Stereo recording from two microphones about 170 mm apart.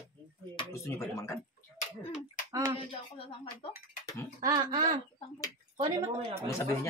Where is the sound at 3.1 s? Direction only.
30° left (ahead or behind).